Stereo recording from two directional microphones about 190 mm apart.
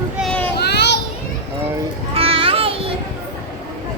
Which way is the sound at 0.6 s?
60° left (ahead or behind).